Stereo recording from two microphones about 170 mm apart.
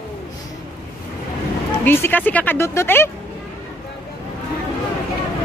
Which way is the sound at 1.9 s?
10° left (ahead or behind).